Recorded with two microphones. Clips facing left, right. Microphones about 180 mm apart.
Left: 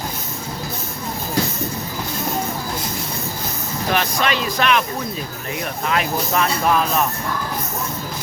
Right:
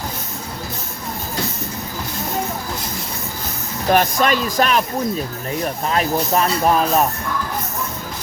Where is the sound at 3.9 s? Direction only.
45° right (ahead or behind).